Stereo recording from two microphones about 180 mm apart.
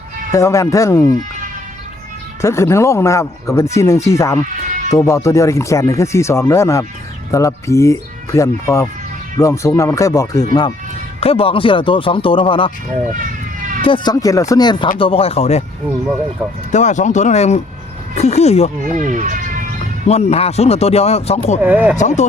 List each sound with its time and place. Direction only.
0.3 s speech: 15° left (ahead or behind)
2.4 s speech: 15° left (ahead or behind)
13.8 s speech: 25° left (ahead or behind)
16.7 s speech: 40° left (ahead or behind)
18.9 s speech: 45° right (ahead or behind)
20.1 s speech: 35° left (ahead or behind)
21.6 s speech: 10° right (ahead or behind)
21.9 s speech: 40° left (ahead or behind)